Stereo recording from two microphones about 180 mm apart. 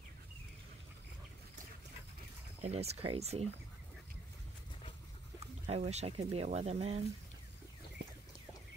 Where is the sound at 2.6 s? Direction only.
35° right (ahead or behind).